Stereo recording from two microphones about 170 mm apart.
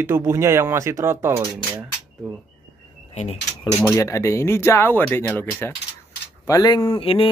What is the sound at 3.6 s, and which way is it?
Speech, 20° left (ahead or behind).